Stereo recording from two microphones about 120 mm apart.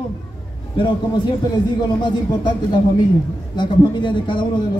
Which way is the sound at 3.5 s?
40° left (ahead or behind).